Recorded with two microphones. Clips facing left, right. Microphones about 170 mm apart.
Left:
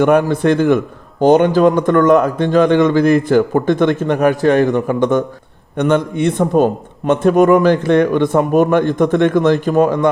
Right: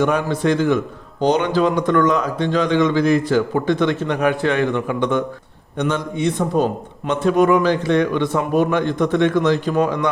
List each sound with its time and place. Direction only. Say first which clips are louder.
0.0 s a man's voice: left 6 dB; 55° left (ahead or behind)
5.7 s a man's voice: left 7 dB; 60° left (ahead or behind)